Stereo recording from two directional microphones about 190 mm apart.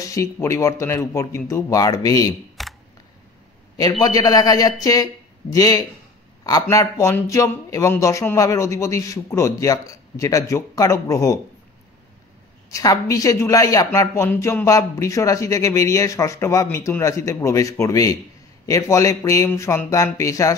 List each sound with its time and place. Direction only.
0.0 s speech: 15° left (ahead or behind)
2.6 s camera: centre (ahead or behind)
4.0 s speech: 20° left (ahead or behind)
12.6 s speech: 15° left (ahead or behind)